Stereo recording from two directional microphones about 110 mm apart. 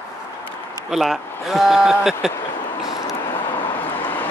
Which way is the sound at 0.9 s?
Centre (ahead or behind).